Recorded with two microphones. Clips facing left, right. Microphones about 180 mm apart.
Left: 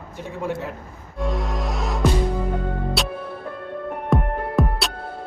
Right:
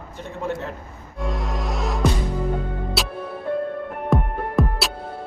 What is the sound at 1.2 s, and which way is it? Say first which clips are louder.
Music: left 2 dB; centre (ahead or behind).